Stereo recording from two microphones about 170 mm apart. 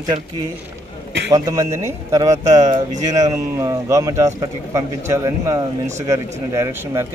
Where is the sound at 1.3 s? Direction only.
20° right (ahead or behind).